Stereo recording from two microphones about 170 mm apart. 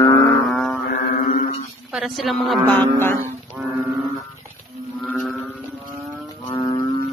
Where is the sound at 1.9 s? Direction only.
Centre (ahead or behind).